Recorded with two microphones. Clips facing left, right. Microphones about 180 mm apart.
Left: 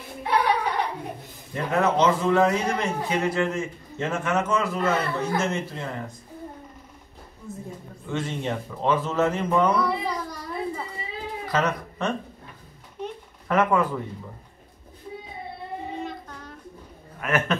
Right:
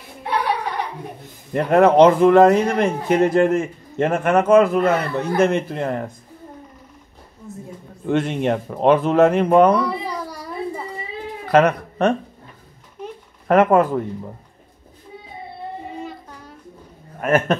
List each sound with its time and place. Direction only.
1.5 s a man's voice: 60° right (ahead or behind)
8.1 s a man's voice: 65° right (ahead or behind)
11.4 s speech: 60° right (ahead or behind)
13.5 s speech: 50° right (ahead or behind)
16.1 s child singing: 10° right (ahead or behind)
17.2 s speech: 45° right (ahead or behind)